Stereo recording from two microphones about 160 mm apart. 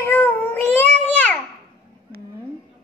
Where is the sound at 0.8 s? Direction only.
10° left (ahead or behind).